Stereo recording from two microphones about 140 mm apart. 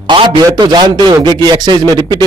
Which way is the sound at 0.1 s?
30° right (ahead or behind).